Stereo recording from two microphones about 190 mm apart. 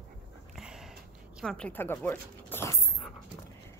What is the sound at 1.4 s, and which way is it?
Speech, 5° left (ahead or behind).